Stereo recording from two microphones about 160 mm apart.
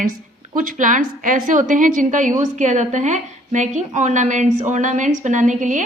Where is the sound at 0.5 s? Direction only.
55° right (ahead or behind).